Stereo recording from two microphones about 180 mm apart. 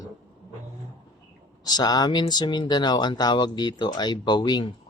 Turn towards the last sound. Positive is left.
turn(degrees=25)  # may be behind; listen again after turning